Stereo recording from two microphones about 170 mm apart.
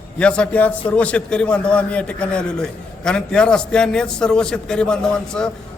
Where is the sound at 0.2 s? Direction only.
5° left (ahead or behind).